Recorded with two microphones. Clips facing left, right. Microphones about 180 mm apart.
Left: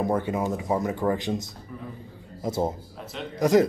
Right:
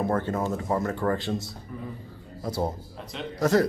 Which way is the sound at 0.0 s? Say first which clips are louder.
Left 1 dB; 15° left (ahead or behind).